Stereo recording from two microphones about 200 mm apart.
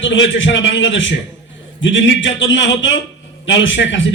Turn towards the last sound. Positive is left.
turn(degrees=65)  # may be behind; listen again after turning